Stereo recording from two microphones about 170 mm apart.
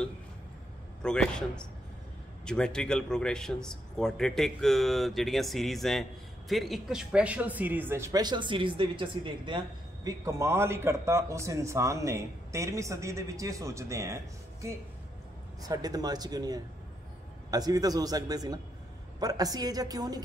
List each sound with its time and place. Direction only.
1.0 s a man's voice: 5° left (ahead or behind); by 9.6 s 30° right (ahead or behind)
10.0 s a man's voice: 15° right (ahead or behind)
15.7 s a man's voice: 20° right (ahead or behind)